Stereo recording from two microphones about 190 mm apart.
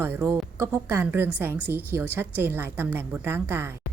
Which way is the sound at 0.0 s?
10° right (ahead or behind).